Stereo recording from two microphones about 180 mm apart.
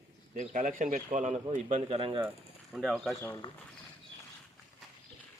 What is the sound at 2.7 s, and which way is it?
Speech, centre (ahead or behind).